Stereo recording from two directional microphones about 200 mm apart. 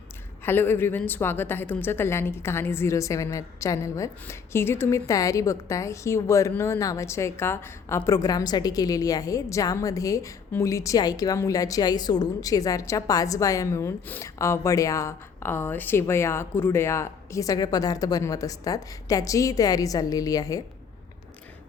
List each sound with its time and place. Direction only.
0.4 s a woman's voice: 10° left (ahead or behind)